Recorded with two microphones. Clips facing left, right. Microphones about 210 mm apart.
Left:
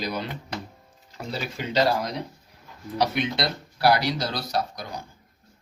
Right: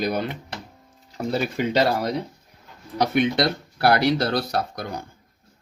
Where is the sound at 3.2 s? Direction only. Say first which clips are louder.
Right 6 dB; 55° right (ahead or behind).